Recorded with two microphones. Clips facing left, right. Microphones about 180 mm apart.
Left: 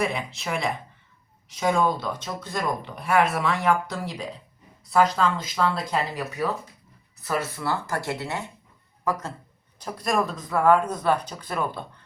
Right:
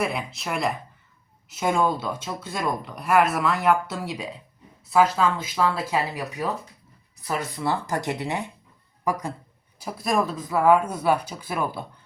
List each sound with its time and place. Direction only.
0.0 s speech: centre (ahead or behind)